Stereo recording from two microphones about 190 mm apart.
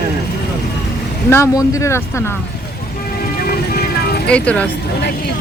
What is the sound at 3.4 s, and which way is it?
Music, 55° left (ahead or behind).